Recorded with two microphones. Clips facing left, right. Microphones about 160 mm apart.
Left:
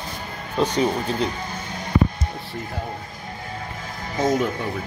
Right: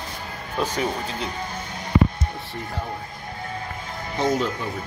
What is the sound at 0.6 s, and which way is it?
Speech, 20° left (ahead or behind).